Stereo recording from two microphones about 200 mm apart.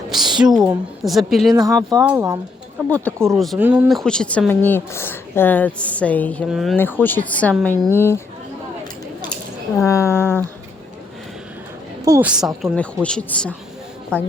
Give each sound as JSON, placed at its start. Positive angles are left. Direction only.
{"t": 0.1, "sound": "a woman's voice", "side_deg": 0}
{"t": 1.9, "sound": "speech", "side_deg": -15}
{"t": 2.9, "sound": "a woman's voice", "side_deg": 5}
{"t": 6.7, "sound": "speech", "side_deg": 10}
{"t": 9.7, "sound": "speech", "side_deg": 15}
{"t": 12.0, "sound": "speech", "side_deg": -15}
{"t": 12.6, "sound": "a woman's voice", "side_deg": 5}